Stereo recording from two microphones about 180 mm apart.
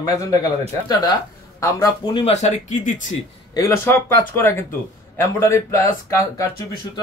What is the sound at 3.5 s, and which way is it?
Speech, 15° left (ahead or behind).